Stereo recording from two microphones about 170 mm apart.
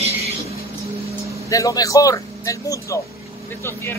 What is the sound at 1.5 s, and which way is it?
Speech, 20° left (ahead or behind).